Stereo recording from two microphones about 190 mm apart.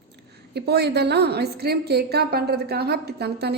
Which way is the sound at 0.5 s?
60° right (ahead or behind).